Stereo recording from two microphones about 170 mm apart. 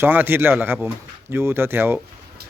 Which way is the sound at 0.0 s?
10° right (ahead or behind).